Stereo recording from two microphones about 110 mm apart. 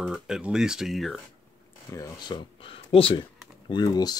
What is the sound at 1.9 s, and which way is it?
Speech, 35° left (ahead or behind).